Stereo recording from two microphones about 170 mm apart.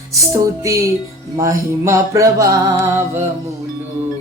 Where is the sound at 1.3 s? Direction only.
20° right (ahead or behind).